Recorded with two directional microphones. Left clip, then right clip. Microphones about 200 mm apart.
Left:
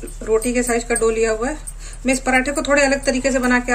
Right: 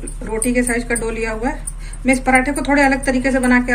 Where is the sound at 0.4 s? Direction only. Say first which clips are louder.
Right 1 dB; 40° left (ahead or behind).